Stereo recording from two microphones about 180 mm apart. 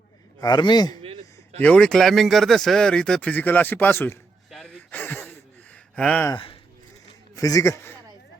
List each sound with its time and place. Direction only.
0.4 s a man's voice: 25° left (ahead or behind)
1.0 s a sound: 30° right (ahead or behind)
1.6 s speech: 5° left (ahead or behind)
4.6 s a sound: 10° left (ahead or behind)
6.0 s speech: 10° left (ahead or behind)
6.3 s speech: 30° left (ahead or behind)
7.3 s a man's voice: 20° left (ahead or behind)